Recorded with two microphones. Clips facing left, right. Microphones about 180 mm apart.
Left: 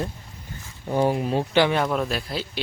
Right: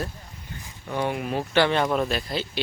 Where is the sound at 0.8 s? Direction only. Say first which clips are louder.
Left 5 dB; 35° left (ahead or behind).